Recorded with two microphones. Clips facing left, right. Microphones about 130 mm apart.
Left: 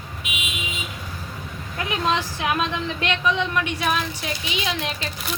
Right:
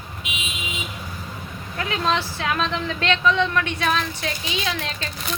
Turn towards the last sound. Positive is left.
turn(degrees=15)  # may be behind; listen again after turning